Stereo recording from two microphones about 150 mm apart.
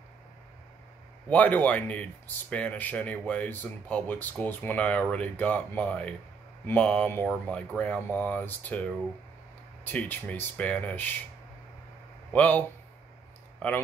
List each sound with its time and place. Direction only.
1.3 s speech: 10° left (ahead or behind)
9.8 s speech: 10° left (ahead or behind)
12.3 s speech: 10° left (ahead or behind)